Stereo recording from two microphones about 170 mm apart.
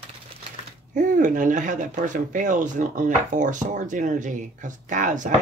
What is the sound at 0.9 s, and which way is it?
Speech, 50° right (ahead or behind).